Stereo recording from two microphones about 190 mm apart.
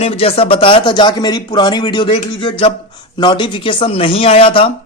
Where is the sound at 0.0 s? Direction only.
30° left (ahead or behind).